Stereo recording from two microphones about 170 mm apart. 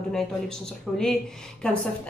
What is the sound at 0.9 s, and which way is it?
Speech, centre (ahead or behind).